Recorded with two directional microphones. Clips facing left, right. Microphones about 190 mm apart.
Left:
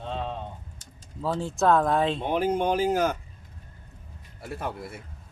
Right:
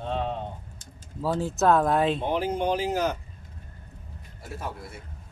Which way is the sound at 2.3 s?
50° left (ahead or behind).